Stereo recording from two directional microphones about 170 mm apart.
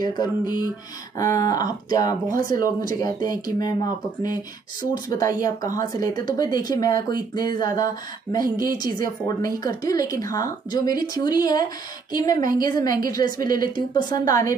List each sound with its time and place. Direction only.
0.0 s speech: 25° left (ahead or behind)
2.4 s speech: 55° right (ahead or behind)
3.0 s speech: 25° left (ahead or behind)
8.4 s a woman's voice: 55° right (ahead or behind)
9.6 s speech: 20° left (ahead or behind)